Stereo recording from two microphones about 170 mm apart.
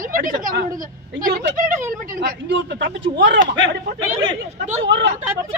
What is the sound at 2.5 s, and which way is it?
Speech, 90° right.